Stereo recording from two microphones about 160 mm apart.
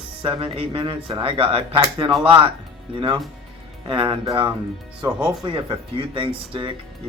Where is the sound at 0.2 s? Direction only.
35° right (ahead or behind).